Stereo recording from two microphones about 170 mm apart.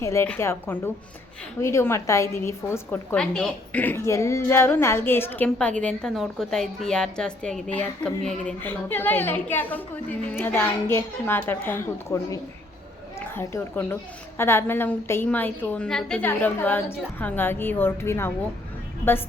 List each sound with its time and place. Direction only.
0.0 s a woman's voice: 15° left (ahead or behind)